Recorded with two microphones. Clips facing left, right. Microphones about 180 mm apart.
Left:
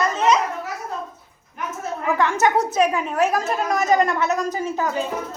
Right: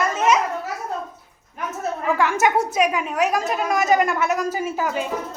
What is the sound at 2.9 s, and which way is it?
A woman's voice, centre (ahead or behind).